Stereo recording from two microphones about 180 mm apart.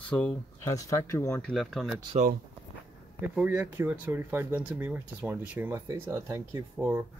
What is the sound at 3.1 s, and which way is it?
Speech, 10° right (ahead or behind).